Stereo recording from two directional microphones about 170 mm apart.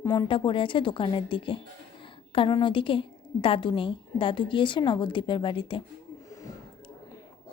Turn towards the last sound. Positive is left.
turn(degrees=30)  # may be behind; listen again after turning